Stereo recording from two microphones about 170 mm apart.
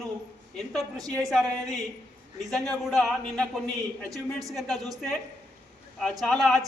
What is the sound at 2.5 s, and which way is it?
A man's voice, centre (ahead or behind).